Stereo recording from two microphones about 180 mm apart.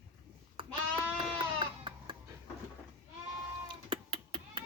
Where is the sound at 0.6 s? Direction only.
30° right (ahead or behind).